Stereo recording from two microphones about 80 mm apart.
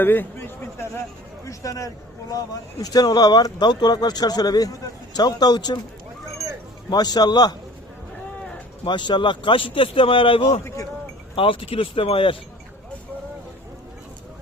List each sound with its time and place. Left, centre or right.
0.0 s a man's voice: left
1.5 s speech: left
6.9 s speech: left
8.8 s a man's voice: left
10.6 s speech: left
11.3 s a man's voice: left